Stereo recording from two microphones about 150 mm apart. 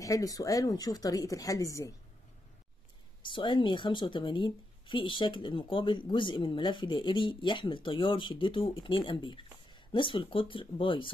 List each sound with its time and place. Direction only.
0.0 s speech: 20° left (ahead or behind)
3.2 s speech: 30° left (ahead or behind)